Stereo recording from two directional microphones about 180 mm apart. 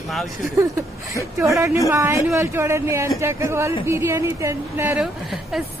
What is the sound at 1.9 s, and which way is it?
A woman's voice, 15° right (ahead or behind).